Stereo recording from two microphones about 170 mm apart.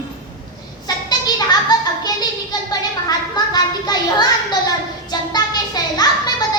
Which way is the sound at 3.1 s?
25° left (ahead or behind).